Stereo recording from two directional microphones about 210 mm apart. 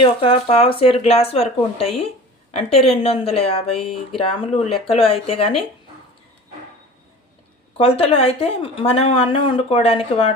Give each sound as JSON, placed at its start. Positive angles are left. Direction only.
{"t": 0.0, "sound": "speech", "side_deg": 25}
{"t": 7.8, "sound": "speech", "side_deg": 25}